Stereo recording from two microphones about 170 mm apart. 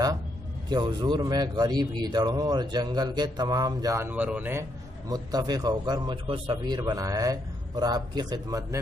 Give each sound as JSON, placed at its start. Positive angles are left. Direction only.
{"t": 0.7, "sound": "speech", "side_deg": -25}
{"t": 5.1, "sound": "speech", "side_deg": -25}